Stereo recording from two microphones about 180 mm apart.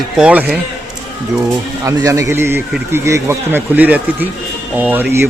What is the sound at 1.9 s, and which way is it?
A man's voice, 15° right (ahead or behind).